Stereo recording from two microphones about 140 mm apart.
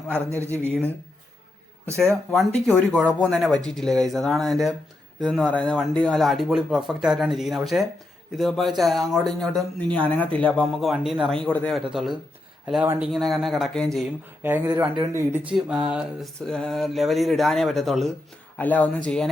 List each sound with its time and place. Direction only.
0.3 s speech: 20° right (ahead or behind)
2.0 s speech: centre (ahead or behind)
14.4 s speech: 15° right (ahead or behind)
15.5 s speech: 5° right (ahead or behind)